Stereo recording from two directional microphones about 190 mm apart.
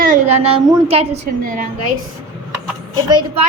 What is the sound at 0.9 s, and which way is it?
Speech, 35° right (ahead or behind).